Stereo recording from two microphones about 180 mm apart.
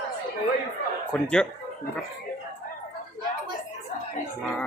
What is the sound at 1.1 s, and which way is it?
Speech, 5° left (ahead or behind).